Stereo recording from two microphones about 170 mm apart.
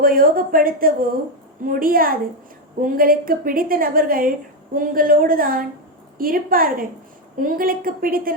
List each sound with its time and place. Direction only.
0.0 s a woman's voice: 55° right (ahead or behind)